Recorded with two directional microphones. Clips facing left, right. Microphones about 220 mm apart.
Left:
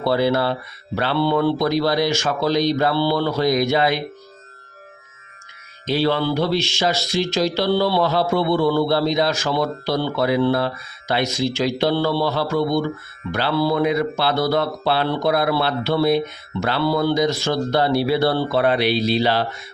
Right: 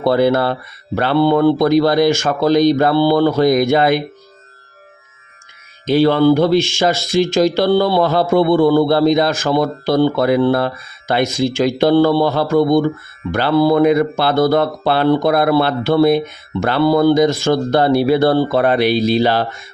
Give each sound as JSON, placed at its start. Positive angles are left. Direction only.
{"t": 0.0, "sound": "speech", "side_deg": -50}
{"t": 5.8, "sound": "speech", "side_deg": -50}